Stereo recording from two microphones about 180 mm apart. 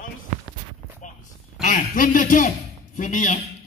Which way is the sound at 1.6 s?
45° left (ahead or behind).